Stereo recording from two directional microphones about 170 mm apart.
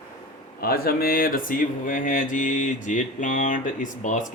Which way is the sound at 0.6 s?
65° left (ahead or behind).